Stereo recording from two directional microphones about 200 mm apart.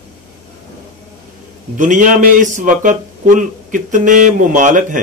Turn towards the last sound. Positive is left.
turn(degrees=-40)  # may be behind; listen again after turning